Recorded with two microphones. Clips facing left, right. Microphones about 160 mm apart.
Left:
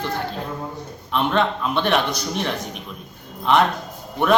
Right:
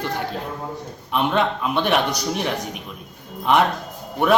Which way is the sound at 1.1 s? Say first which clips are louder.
Even; 10° right (ahead or behind).